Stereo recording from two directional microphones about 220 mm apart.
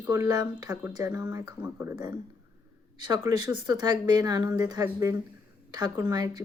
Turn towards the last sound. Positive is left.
turn(degrees=-15)  # may be behind; listen again after turning